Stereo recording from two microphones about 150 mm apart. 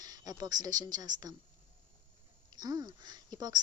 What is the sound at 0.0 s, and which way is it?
Speech, 25° right (ahead or behind).